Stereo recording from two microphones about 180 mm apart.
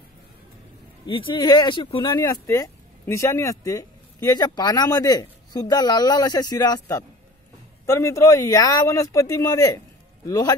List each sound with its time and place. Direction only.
1.0 s speech: 25° left (ahead or behind)